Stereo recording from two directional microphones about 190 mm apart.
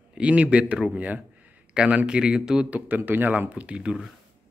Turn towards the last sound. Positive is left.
turn(degrees=-5)  # may be behind; listen again after turning